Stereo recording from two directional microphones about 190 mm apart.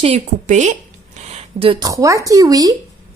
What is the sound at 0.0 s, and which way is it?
Speech, 35° right (ahead or behind).